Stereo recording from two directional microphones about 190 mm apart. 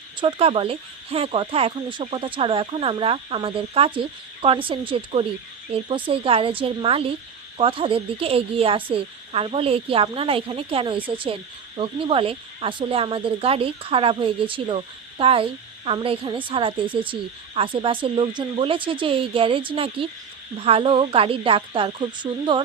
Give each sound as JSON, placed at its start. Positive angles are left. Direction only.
{"t": 0.2, "sound": "speech", "side_deg": -30}